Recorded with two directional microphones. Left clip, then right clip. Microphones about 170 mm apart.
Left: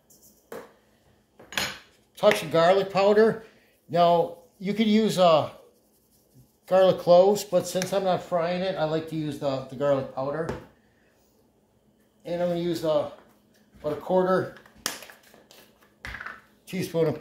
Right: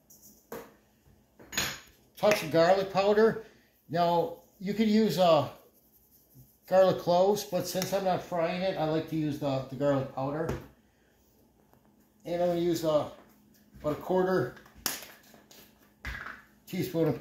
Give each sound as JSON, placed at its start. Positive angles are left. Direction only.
{"t": 2.1, "sound": "speech", "side_deg": 40}
{"t": 6.6, "sound": "speech", "side_deg": 40}
{"t": 12.2, "sound": "speech", "side_deg": 15}
{"t": 16.6, "sound": "speech", "side_deg": 30}